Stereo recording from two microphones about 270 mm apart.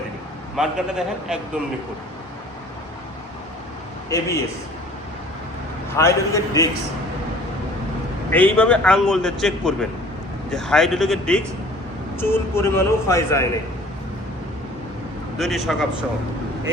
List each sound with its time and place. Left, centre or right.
0.5 s a man's voice: centre
4.1 s a man's voice: centre
6.0 s a man's voice: centre
8.3 s a man's voice: centre
15.4 s a man's voice: centre